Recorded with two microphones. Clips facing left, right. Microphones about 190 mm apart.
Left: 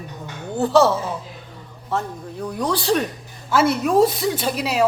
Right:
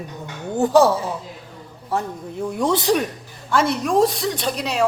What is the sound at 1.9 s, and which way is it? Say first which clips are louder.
A man's voice: right 1 dB; 15° right (ahead or behind).